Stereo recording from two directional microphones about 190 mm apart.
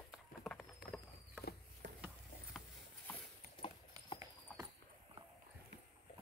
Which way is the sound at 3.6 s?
25° left (ahead or behind).